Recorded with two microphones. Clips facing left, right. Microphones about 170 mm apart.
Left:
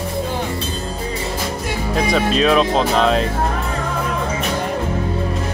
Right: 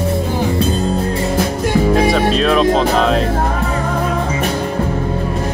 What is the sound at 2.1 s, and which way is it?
Speech, centre (ahead or behind).